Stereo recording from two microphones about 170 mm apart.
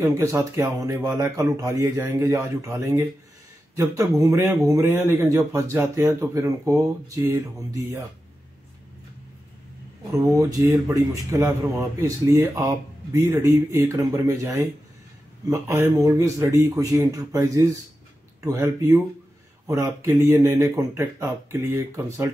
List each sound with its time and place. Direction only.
0.0 s a man's voice: 15° right (ahead or behind)
10.3 s a man's voice: 20° right (ahead or behind)